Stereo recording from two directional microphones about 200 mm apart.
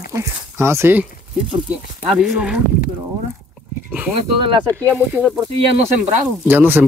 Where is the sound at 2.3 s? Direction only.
5° right (ahead or behind).